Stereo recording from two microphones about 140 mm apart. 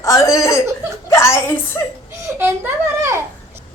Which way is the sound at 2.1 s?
15° right (ahead or behind).